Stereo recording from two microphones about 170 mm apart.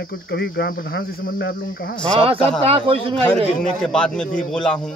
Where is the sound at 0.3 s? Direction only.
75° left (ahead or behind).